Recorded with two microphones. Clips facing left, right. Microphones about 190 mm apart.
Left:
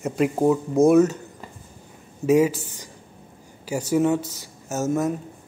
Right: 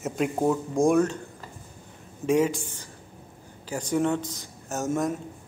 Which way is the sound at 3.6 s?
10° left (ahead or behind).